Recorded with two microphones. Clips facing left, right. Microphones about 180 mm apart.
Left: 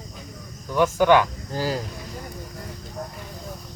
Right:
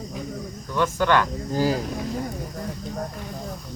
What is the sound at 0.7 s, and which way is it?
Speech, 10° left (ahead or behind).